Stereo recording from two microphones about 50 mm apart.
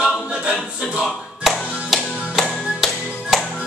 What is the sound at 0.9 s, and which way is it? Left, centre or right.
Speech, centre.